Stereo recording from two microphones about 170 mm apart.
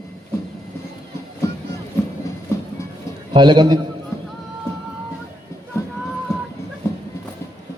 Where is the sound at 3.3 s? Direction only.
25° right (ahead or behind).